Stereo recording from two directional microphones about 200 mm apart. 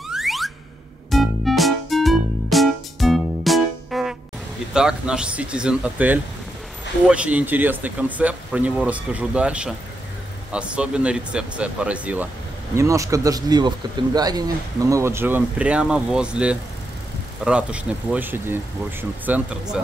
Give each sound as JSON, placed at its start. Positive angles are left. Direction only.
{"t": 0.1, "sound": "a sound", "side_deg": 0}
{"t": 1.1, "sound": "music", "side_deg": 0}
{"t": 4.7, "sound": "speech", "side_deg": -5}